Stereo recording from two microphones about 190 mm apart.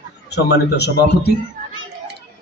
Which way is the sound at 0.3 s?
60° left (ahead or behind).